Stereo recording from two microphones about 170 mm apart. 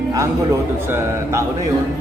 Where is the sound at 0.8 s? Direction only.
15° right (ahead or behind).